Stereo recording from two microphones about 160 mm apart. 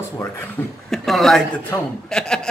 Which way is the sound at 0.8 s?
Centre (ahead or behind).